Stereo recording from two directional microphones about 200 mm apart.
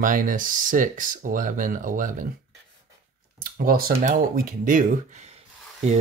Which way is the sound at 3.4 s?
45° right (ahead or behind).